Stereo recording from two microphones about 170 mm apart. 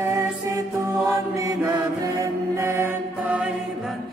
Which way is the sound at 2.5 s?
15° right (ahead or behind).